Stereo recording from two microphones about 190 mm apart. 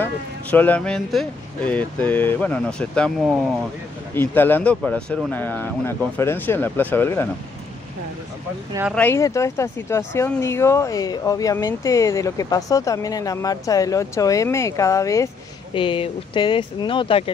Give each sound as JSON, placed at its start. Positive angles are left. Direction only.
{"t": 0.0, "sound": "speech", "side_deg": 10}
{"t": 8.9, "sound": "speech", "side_deg": 10}
{"t": 15.7, "sound": "speech", "side_deg": 25}